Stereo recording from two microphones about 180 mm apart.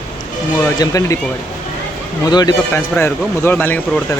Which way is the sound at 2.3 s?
20° left (ahead or behind).